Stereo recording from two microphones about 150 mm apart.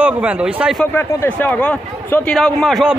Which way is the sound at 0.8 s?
15° left (ahead or behind).